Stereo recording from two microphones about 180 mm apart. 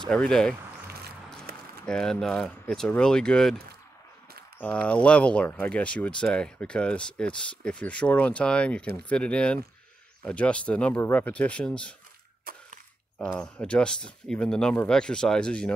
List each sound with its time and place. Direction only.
0.0 s speech: 5° left (ahead or behind)
1.5 s a sound: 55° right (ahead or behind)
1.9 s speech: 5° left (ahead or behind)
4.6 s speech: 10° left (ahead or behind)
12.5 s a sound: 55° right (ahead or behind)
13.2 s speech: 5° left (ahead or behind)